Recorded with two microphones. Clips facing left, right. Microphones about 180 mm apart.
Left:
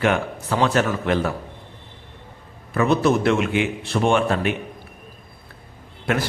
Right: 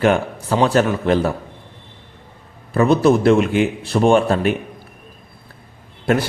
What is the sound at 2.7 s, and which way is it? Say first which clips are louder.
A man's voice: right 4 dB; 35° right (ahead or behind).